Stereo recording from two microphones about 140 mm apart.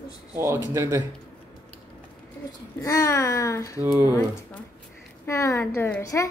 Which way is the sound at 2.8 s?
20° left (ahead or behind).